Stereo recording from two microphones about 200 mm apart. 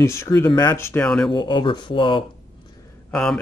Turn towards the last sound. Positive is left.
turn(degrees=5)  # may be behind; listen again after turning